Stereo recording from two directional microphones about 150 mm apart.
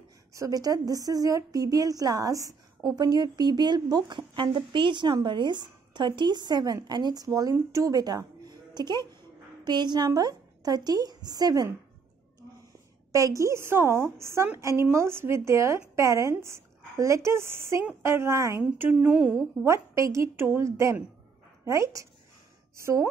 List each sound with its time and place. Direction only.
0.3 s a woman's voice: 20° right (ahead or behind)
13.1 s a woman's voice: 20° right (ahead or behind)
19.6 s a woman's voice: 20° right (ahead or behind)